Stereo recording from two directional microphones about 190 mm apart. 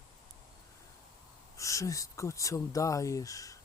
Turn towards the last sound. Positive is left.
turn(degrees=15)  # may be behind; listen again after turning